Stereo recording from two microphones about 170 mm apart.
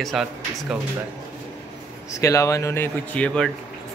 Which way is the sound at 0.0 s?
Centre (ahead or behind).